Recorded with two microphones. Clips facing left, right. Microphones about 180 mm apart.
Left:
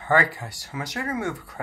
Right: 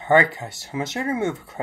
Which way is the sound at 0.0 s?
20° right (ahead or behind).